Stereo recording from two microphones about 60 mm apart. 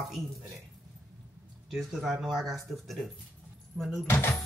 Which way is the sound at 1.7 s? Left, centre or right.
Centre.